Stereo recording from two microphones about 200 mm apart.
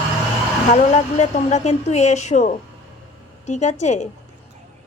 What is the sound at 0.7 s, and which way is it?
A woman's voice, 35° left (ahead or behind).